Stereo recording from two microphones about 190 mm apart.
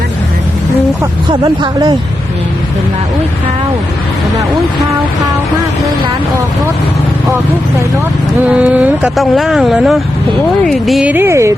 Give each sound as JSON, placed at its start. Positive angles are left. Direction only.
{"t": 1.3, "sound": "speech", "side_deg": -25}
{"t": 8.4, "sound": "speech", "side_deg": -5}